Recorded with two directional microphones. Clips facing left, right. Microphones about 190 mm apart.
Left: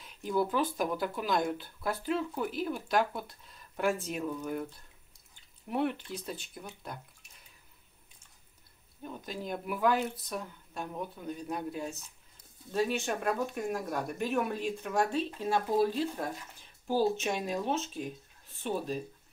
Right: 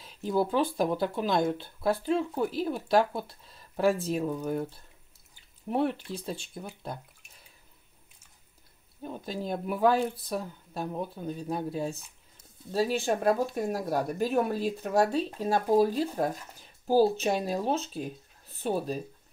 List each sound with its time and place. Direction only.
0.0 s speech: 30° right (ahead or behind)
5.7 s speech: 30° right (ahead or behind)
9.0 s speech: 35° right (ahead or behind)